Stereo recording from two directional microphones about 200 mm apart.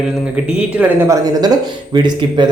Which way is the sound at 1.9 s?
20° right (ahead or behind).